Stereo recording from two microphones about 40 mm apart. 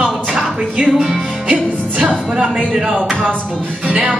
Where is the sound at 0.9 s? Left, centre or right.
Centre.